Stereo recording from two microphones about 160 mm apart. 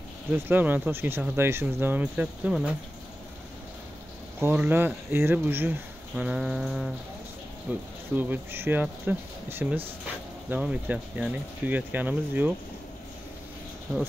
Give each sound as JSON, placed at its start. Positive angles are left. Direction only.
{"t": 0.3, "sound": "speech", "side_deg": -10}
{"t": 4.4, "sound": "speech", "side_deg": -15}
{"t": 13.9, "sound": "speech", "side_deg": 0}